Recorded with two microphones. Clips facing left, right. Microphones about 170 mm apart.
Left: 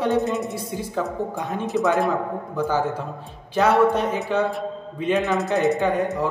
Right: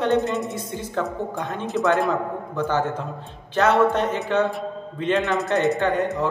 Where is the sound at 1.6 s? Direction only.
Centre (ahead or behind).